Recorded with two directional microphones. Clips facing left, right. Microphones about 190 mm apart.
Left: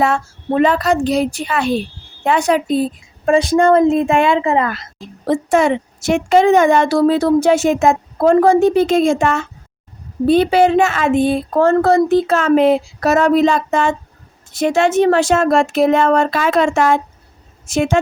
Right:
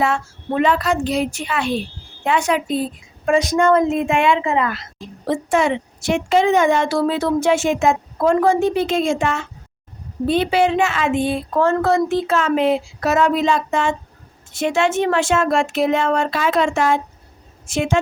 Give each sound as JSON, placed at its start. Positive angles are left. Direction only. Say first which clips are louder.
{"t": 0.0, "sound": "a woman's voice", "louder": "left 3 dB", "side_deg": 40}